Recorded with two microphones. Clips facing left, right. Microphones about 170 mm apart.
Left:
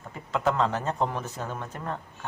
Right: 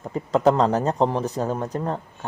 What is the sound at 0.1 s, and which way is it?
Speech, 35° right (ahead or behind).